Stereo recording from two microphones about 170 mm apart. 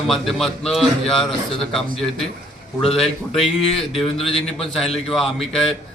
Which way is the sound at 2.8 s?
Centre (ahead or behind).